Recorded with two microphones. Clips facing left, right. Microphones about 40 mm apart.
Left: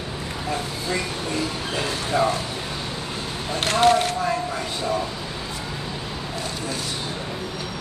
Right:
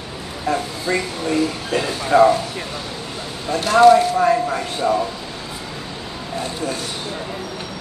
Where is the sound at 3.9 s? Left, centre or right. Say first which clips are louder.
Right 7 dB; left.